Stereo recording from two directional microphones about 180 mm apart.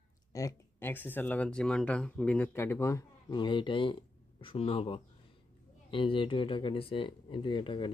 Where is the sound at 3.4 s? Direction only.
25° left (ahead or behind).